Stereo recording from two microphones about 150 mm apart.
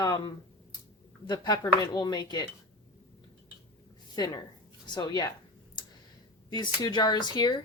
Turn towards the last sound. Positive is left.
turn(degrees=30)  # may be behind; listen again after turning